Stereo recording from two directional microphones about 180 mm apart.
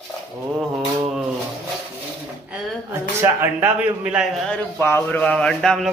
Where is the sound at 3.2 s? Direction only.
10° right (ahead or behind).